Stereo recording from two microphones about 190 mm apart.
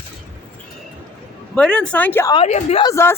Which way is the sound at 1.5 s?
5° left (ahead or behind).